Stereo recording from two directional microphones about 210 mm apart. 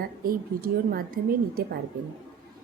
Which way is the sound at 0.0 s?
45° right (ahead or behind).